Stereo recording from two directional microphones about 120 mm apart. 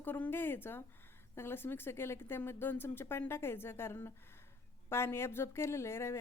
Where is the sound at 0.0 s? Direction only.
15° left (ahead or behind).